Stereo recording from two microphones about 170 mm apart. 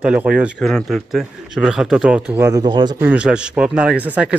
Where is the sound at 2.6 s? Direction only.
25° right (ahead or behind).